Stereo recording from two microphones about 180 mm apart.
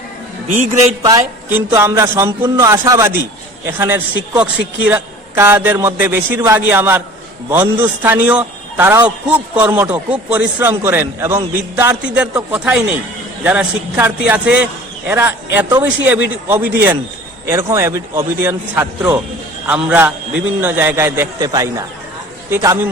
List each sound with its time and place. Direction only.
1.0 s a man's voice: 15° right (ahead or behind)